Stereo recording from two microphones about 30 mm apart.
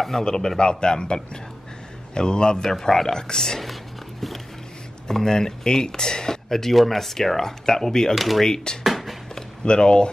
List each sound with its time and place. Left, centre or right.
0.2 s speech: left
5.0 s speech: centre
6.7 s speech: centre
8.1 s speech: centre
8.7 s speech: left